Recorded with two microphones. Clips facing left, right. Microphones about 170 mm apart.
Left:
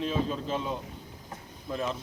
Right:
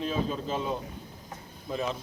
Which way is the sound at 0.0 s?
Centre (ahead or behind).